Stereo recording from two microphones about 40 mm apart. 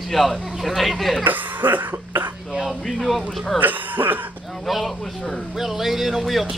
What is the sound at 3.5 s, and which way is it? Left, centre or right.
Speech, right.